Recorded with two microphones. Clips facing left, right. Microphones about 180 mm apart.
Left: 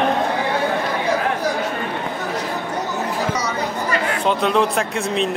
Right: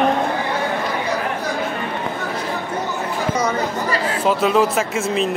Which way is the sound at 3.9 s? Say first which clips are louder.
Even; 30° right (ahead or behind).